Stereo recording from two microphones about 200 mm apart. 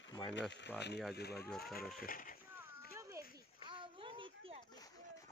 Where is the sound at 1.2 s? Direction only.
55° left (ahead or behind).